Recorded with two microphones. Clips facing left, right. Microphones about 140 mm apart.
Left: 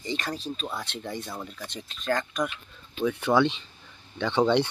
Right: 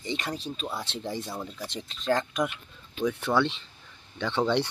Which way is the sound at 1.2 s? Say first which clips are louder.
Right 1 dB; 10° right (ahead or behind).